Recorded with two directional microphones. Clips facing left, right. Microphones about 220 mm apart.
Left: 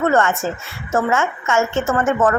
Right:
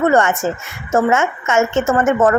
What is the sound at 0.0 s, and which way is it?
A woman's voice, 15° right (ahead or behind).